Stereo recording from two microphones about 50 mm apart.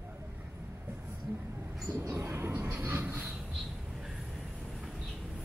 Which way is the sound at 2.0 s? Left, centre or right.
Right.